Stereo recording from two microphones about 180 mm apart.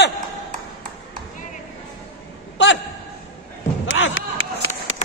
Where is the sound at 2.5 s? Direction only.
90° left.